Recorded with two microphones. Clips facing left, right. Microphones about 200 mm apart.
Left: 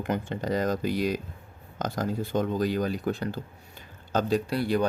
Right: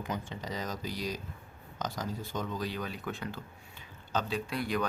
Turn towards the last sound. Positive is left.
turn(degrees=30)  # may be behind; listen again after turning